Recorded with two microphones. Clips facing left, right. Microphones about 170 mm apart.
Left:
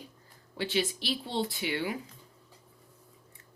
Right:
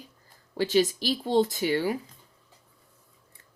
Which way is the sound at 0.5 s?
40° right (ahead or behind).